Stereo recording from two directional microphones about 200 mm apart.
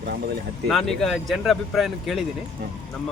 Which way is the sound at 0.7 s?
Centre (ahead or behind).